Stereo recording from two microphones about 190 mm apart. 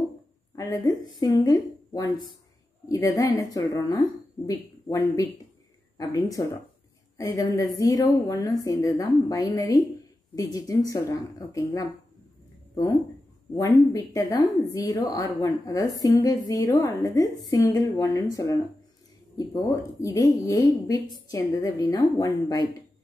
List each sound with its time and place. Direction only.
0.6 s speech: 20° left (ahead or behind)
13.6 s speech: 20° left (ahead or behind)